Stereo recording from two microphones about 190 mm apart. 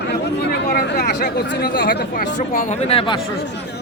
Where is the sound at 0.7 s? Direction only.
55° left (ahead or behind).